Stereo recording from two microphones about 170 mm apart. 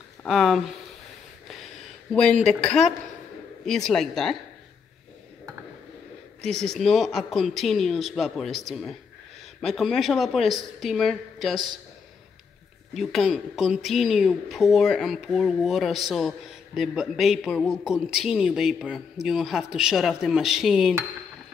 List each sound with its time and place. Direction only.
0.2 s a woman's voice: centre (ahead or behind)
2.4 s a woman's voice: 5° left (ahead or behind)
6.4 s a woman's voice: 5° left (ahead or behind)
12.9 s a woman's voice: centre (ahead or behind)